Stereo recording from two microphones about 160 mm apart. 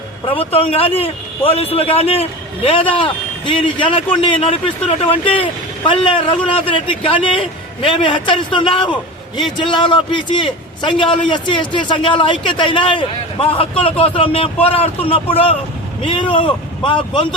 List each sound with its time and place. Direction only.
0.3 s a man's voice: 35° left (ahead or behind)